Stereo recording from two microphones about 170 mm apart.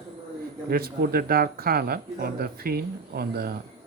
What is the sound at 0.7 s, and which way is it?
Speech, 60° right (ahead or behind).